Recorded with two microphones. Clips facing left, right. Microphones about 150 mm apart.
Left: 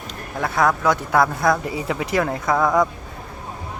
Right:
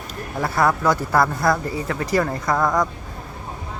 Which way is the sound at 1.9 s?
10° left (ahead or behind).